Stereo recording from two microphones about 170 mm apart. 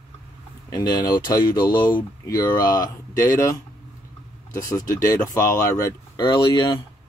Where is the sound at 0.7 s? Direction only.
20° left (ahead or behind).